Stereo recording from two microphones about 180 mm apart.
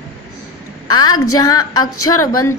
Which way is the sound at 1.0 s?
20° left (ahead or behind).